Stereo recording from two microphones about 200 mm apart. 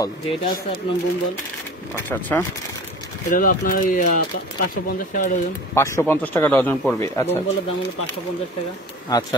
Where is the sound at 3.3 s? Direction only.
45° left (ahead or behind).